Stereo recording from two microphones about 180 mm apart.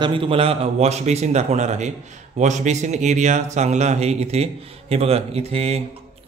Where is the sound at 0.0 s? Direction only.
30° right (ahead or behind).